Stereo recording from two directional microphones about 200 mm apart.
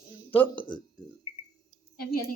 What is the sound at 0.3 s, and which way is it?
Child singing, 10° left (ahead or behind).